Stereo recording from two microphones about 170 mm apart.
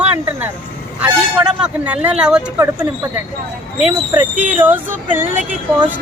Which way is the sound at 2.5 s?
15° right (ahead or behind).